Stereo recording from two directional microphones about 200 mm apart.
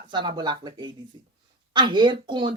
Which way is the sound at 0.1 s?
20° right (ahead or behind).